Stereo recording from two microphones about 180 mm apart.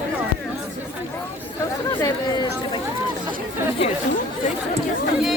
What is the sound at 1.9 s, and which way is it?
Chatter, 20° left (ahead or behind).